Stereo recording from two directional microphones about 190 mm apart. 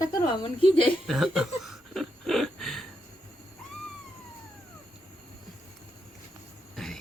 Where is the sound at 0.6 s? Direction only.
30° left (ahead or behind).